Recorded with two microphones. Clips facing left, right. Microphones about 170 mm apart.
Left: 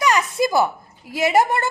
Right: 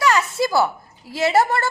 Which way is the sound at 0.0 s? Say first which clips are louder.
Even; 15° left (ahead or behind).